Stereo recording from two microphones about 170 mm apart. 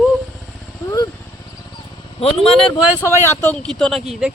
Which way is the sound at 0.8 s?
20° left (ahead or behind).